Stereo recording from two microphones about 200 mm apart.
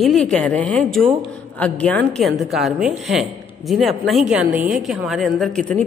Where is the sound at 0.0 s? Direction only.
Centre (ahead or behind).